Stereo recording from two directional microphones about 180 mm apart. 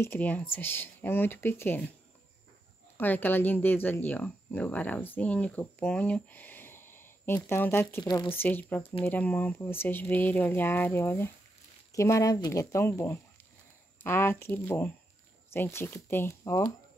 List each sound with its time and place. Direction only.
0.0 s speech: 10° left (ahead or behind)
3.0 s speech: 10° left (ahead or behind)
8.0 s speech: 25° left (ahead or behind)
8.3 s speech: 10° left (ahead or behind)